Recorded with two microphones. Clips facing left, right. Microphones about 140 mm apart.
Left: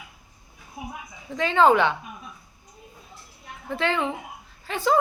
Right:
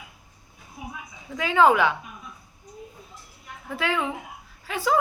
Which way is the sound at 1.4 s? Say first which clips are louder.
Left 1 dB; 5° right (ahead or behind).